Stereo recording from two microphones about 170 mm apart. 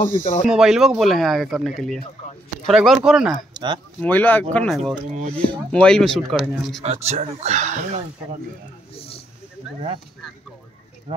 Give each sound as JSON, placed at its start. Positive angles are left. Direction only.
{"t": 0.2, "sound": "speech", "side_deg": 45}
{"t": 0.5, "sound": "speech", "side_deg": -5}
{"t": 3.5, "sound": "speech", "side_deg": -25}
{"t": 4.0, "sound": "speech", "side_deg": 10}
{"t": 6.8, "sound": "speech", "side_deg": -40}
{"t": 8.9, "sound": "a sound", "side_deg": 35}
{"t": 11.1, "sound": "speech", "side_deg": -35}